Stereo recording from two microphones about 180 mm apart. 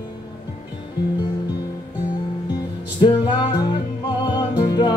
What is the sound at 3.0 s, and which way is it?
Music, 25° left (ahead or behind).